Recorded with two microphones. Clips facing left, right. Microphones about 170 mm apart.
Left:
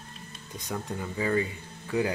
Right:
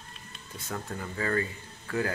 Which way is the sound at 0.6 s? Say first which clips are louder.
Left 3 dB; 15° left (ahead or behind).